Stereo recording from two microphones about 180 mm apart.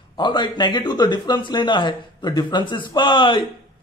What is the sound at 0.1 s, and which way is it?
A man's voice, 25° left (ahead or behind).